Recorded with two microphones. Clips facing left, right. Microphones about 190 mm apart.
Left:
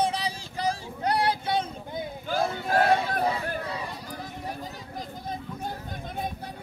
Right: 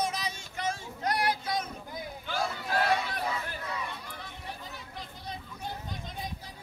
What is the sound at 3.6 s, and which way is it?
Run, 30° left (ahead or behind).